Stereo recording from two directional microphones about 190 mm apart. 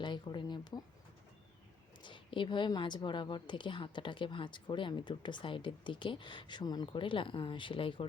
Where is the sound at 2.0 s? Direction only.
25° left (ahead or behind).